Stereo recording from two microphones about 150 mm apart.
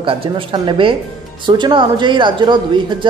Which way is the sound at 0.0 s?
35° right (ahead or behind).